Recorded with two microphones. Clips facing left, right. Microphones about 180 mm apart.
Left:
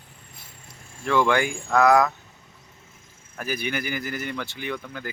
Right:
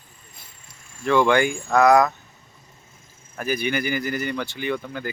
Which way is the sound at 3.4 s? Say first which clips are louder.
Right 4 dB; centre (ahead or behind).